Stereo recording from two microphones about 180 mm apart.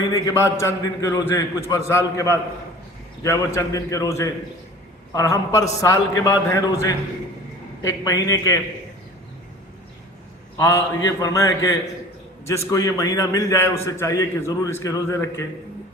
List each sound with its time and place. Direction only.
0.1 s a man's voice: 15° left (ahead or behind)
3.2 s a man's voice: 15° left (ahead or behind)
10.6 s a man's voice: 15° left (ahead or behind)